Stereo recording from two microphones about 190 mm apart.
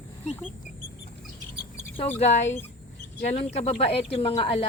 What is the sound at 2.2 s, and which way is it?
Speech, 35° left (ahead or behind).